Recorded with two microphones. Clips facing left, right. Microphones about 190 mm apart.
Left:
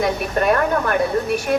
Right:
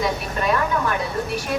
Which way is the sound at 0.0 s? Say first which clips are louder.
Left 4 dB; 55° left (ahead or behind).